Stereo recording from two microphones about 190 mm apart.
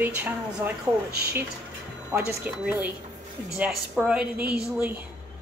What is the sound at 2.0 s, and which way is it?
A woman's voice, 5° right (ahead or behind).